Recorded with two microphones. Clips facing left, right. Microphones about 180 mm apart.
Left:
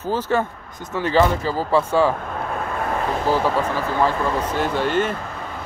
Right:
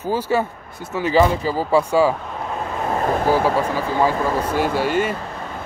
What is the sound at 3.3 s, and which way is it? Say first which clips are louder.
Speech: right 1 dB; 10° right (ahead or behind).